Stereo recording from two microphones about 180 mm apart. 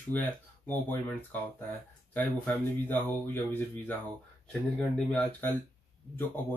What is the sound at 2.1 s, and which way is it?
Speech, 10° left (ahead or behind).